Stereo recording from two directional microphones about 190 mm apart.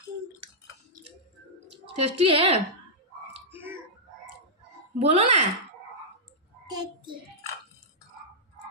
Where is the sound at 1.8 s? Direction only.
30° right (ahead or behind).